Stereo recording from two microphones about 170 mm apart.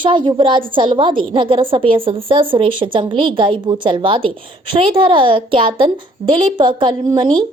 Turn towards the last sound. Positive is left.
turn(degrees=-25)  # may be behind; listen again after turning